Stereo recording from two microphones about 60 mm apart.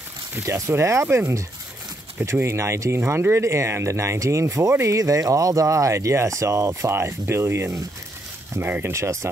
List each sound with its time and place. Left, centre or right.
0.4 s speech: right
2.4 s speech: right
4.9 s speech: right
6.9 s speech: right
8.9 s speech: right